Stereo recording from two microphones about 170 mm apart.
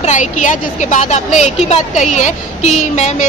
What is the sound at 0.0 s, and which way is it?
A woman's voice, 45° left (ahead or behind).